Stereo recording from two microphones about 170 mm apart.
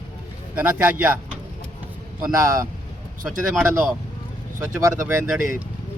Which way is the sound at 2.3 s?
20° right (ahead or behind).